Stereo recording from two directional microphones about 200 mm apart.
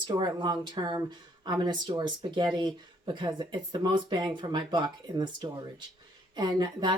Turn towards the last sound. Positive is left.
turn(degrees=-20)  # may be behind; listen again after turning